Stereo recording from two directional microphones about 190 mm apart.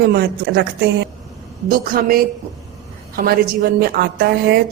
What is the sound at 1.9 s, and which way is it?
Speech, 50° right (ahead or behind).